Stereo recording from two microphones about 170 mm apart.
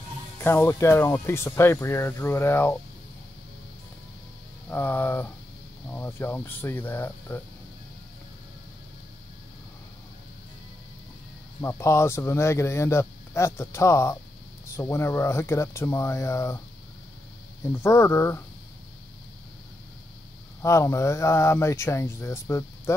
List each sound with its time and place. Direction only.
0.4 s speech: 15° left (ahead or behind)
4.6 s speech: 15° left (ahead or behind)
11.6 s speech: 15° left (ahead or behind)
17.6 s speech: 15° left (ahead or behind)
20.6 s speech: 15° left (ahead or behind)